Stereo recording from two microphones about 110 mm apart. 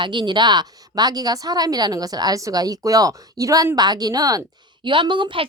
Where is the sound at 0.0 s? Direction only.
45° right (ahead or behind).